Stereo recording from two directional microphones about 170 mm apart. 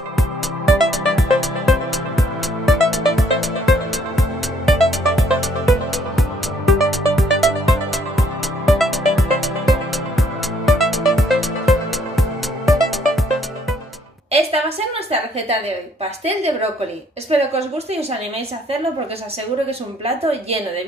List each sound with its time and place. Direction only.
0.7 s music: centre (ahead or behind)
15.0 s a sound: 35° right (ahead or behind)
16.0 s a woman's voice: 35° right (ahead or behind)
20.2 s a woman's voice: 35° right (ahead or behind)